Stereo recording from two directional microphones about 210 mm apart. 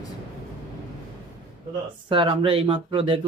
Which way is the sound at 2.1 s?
25° right (ahead or behind).